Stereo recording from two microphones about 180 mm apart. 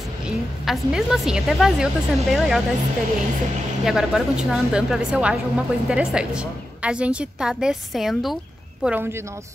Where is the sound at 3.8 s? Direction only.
5° right (ahead or behind).